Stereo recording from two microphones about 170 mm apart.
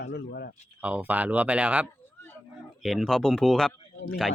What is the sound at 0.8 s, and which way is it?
Speech, 10° right (ahead or behind).